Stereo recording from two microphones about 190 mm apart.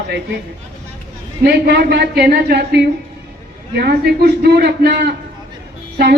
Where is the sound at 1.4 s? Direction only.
60° right (ahead or behind).